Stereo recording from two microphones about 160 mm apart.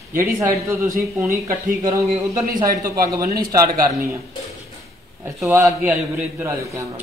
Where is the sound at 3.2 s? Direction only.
65° right (ahead or behind).